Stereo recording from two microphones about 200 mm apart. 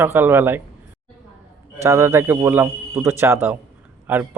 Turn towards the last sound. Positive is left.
turn(degrees=-10)  # may be behind; listen again after turning